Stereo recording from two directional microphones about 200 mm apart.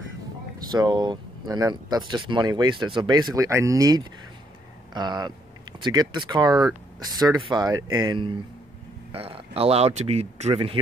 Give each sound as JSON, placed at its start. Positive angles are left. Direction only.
{"t": 0.7, "sound": "speech", "side_deg": -20}